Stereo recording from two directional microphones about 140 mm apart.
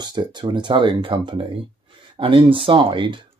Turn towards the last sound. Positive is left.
turn(degrees=-35)  # may be behind; listen again after turning